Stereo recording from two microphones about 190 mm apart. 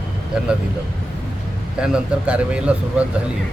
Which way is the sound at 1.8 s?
5° right (ahead or behind).